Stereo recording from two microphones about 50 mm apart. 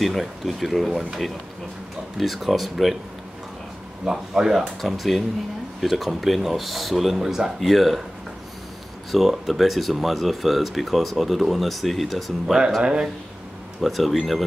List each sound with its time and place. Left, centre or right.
0.0 s speech: centre
4.0 s speech: centre
9.1 s speech: centre
12.8 s speech: centre
13.7 s speech: centre